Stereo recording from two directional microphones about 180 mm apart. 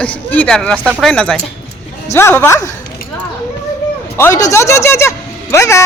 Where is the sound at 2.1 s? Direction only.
15° left (ahead or behind).